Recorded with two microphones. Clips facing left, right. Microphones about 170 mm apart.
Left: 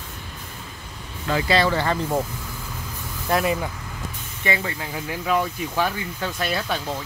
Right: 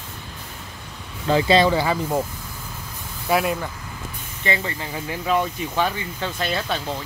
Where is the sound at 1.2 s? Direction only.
25° right (ahead or behind); by 2.3 s 5° right (ahead or behind).